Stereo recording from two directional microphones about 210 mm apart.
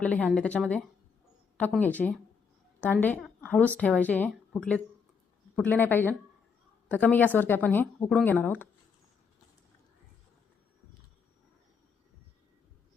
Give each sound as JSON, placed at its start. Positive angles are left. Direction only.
{"t": 0.0, "sound": "speech", "side_deg": 5}